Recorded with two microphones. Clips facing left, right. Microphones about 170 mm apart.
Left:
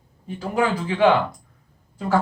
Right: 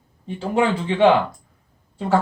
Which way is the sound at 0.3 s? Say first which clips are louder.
Right 2 dB; 25° right (ahead or behind).